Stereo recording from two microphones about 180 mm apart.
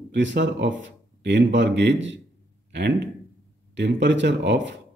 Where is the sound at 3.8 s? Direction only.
75° right (ahead or behind).